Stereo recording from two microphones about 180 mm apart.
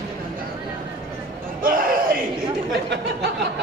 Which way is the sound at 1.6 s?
50° right (ahead or behind).